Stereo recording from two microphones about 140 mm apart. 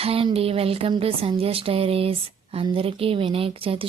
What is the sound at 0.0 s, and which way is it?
Speech, 40° right (ahead or behind).